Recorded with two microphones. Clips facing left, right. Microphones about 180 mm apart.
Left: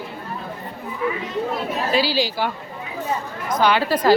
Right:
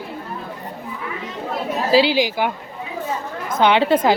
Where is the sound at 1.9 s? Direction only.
20° right (ahead or behind).